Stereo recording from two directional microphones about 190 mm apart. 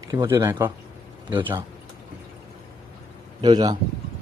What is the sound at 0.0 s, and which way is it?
Speech, 20° right (ahead or behind).